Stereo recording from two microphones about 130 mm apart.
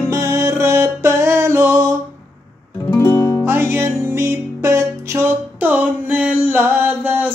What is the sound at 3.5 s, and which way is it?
Music, 20° right (ahead or behind).